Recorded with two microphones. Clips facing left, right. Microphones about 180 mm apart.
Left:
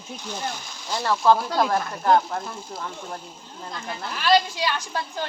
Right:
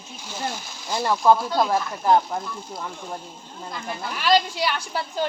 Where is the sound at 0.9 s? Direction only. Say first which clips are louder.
Right 1 dB; 10° right (ahead or behind).